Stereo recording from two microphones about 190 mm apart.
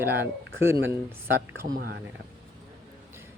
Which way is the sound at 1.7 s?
50° right (ahead or behind).